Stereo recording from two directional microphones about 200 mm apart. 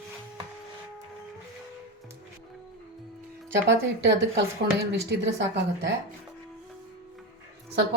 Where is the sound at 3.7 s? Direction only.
60° right (ahead or behind).